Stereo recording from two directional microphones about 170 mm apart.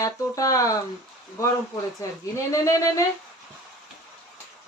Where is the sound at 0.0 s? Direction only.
20° left (ahead or behind).